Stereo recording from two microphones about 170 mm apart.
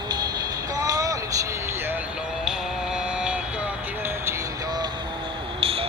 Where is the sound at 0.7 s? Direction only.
20° right (ahead or behind).